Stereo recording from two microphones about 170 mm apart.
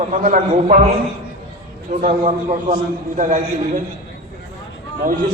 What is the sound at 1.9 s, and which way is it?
A man's voice, 45° right (ahead or behind).